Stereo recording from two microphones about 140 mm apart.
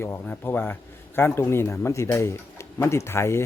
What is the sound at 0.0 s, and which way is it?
A man's voice, 15° left (ahead or behind).